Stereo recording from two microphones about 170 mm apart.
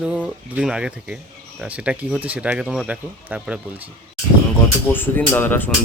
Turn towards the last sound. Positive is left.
turn(degrees=10)  # may be behind; listen again after turning